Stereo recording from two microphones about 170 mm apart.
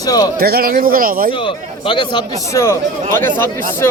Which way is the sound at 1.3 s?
30° left (ahead or behind).